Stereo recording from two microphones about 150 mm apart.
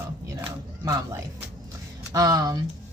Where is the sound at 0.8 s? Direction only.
20° right (ahead or behind).